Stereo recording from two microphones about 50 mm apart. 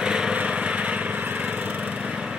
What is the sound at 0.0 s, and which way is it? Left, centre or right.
Lawn mower, centre.